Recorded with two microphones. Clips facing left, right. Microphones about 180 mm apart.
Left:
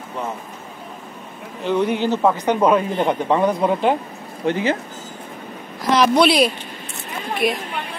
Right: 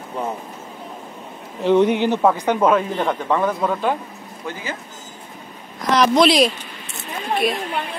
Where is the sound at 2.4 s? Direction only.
10° left (ahead or behind).